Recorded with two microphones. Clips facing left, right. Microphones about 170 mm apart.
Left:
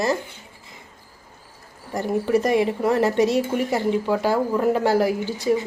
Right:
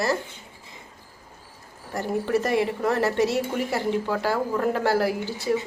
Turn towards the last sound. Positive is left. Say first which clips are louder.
# left 4 dB
turn(degrees=15)  # may be behind; listen again after turning